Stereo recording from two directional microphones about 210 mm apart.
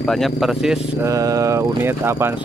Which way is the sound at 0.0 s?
Centre (ahead or behind).